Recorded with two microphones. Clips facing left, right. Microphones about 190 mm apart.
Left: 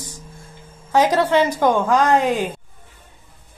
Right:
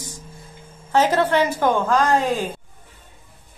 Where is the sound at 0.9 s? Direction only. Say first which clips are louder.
Left 1 dB; 15° left (ahead or behind).